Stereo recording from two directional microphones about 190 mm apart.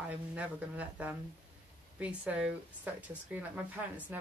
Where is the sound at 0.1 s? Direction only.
10° right (ahead or behind).